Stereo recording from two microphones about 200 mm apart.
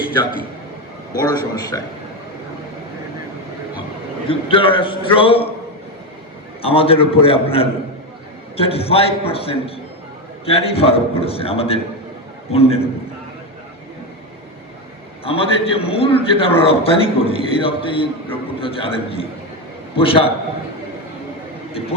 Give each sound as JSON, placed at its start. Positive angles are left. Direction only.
{"t": 1.1, "sound": "a man's voice", "side_deg": 20}
{"t": 4.3, "sound": "a man's voice", "side_deg": 25}
{"t": 6.6, "sound": "a man's voice", "side_deg": 30}
{"t": 15.2, "sound": "a man's voice", "side_deg": 30}
{"t": 21.7, "sound": "a sound", "side_deg": 30}